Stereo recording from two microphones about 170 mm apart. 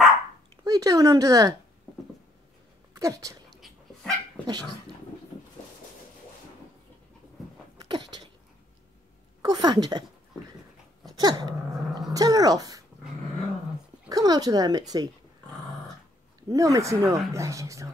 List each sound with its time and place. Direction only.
0.7 s speech: 20° right (ahead or behind)
2.9 s speech: 20° right (ahead or behind)
4.4 s dog: 5° left (ahead or behind)
7.9 s a sound: 25° right (ahead or behind)
9.4 s a woman's voice: 25° right (ahead or behind)
11.1 s dog: 25° right (ahead or behind)
11.7 s a sound: centre (ahead or behind)
12.1 s speech: 20° right (ahead or behind)
14.0 s speech: 20° right (ahead or behind)
16.4 s speech: 20° right (ahead or behind)